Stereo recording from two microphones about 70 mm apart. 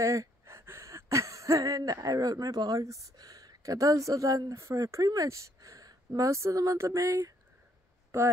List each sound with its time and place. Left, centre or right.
0.0 s speech: right
8.1 s a woman's voice: right